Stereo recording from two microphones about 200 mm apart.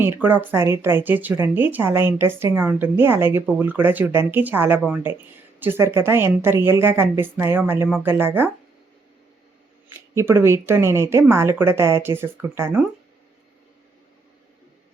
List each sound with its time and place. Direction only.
0.0 s a woman's voice: 10° right (ahead or behind)
10.2 s a woman's voice: 10° right (ahead or behind)